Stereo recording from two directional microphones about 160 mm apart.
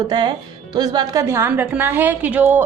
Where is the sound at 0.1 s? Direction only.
25° right (ahead or behind).